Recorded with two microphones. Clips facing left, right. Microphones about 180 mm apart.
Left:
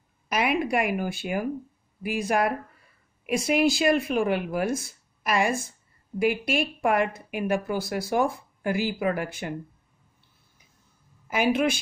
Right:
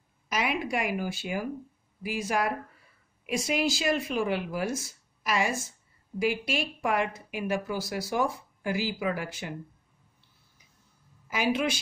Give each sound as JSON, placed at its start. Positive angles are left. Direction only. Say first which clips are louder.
{"t": 0.3, "sound": "a woman's voice", "louder": "left 5 dB", "side_deg": 60}
{"t": 11.2, "sound": "speech", "louder": "left 4 dB", "side_deg": 55}